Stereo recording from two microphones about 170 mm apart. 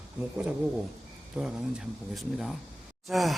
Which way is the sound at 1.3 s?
5° right (ahead or behind).